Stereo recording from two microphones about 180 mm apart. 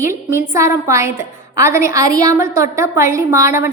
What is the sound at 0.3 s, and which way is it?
A woman's voice, 15° right (ahead or behind).